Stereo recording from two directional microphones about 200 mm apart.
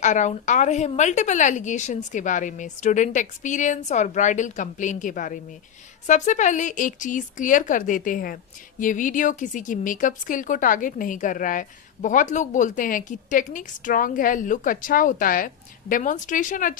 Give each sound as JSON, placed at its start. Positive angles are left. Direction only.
{"t": 0.0, "sound": "a woman's voice", "side_deg": 35}